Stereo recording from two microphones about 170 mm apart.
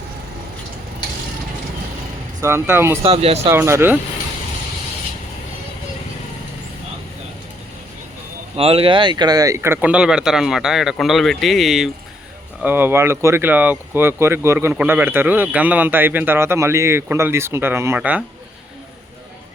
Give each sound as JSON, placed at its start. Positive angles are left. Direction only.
{"t": 2.4, "sound": "speech", "side_deg": -15}
{"t": 3.0, "sound": "speech", "side_deg": -35}
{"t": 3.5, "sound": "speech", "side_deg": -15}
{"t": 8.5, "sound": "speech", "side_deg": -35}
{"t": 12.6, "sound": "speech", "side_deg": -10}